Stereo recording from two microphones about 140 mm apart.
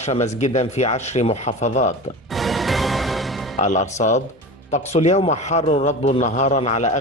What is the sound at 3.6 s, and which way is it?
A man's voice, 60° left (ahead or behind).